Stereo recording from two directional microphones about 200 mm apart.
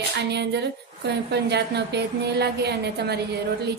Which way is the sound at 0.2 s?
55° right (ahead or behind).